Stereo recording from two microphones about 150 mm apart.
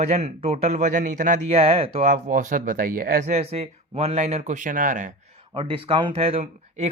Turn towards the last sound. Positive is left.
turn(degrees=-45)  # may be behind; listen again after turning